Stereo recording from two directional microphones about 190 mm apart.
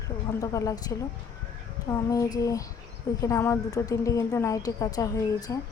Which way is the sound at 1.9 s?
15° left (ahead or behind).